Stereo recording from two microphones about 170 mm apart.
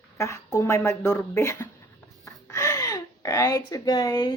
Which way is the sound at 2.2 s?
20° left (ahead or behind).